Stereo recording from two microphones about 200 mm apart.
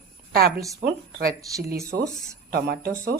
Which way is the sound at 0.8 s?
45° right (ahead or behind).